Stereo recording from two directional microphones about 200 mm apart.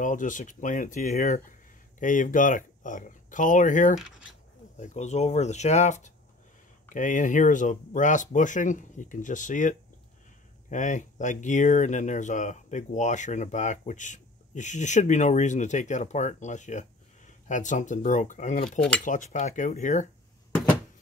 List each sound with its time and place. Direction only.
0.0 s speech: 40° left (ahead or behind)
18.8 s speech: 5° left (ahead or behind)
19.0 s speech: 40° left (ahead or behind)